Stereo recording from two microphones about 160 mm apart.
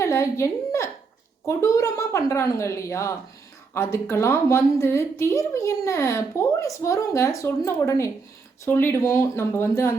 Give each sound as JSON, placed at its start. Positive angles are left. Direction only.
{"t": 0.0, "sound": "a woman's voice", "side_deg": 20}